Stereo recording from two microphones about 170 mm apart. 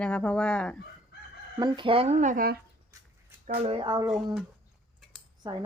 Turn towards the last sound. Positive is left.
turn(degrees=-25)  # may be behind; listen again after turning